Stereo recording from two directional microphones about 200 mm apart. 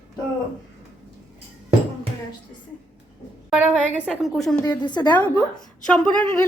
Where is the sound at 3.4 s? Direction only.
5° right (ahead or behind).